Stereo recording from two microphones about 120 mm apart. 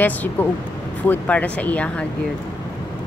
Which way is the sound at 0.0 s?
15° left (ahead or behind).